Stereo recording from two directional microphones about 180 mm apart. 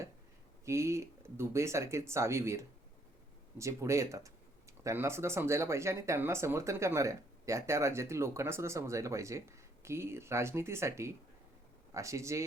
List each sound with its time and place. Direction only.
0.6 s speech: 15° right (ahead or behind)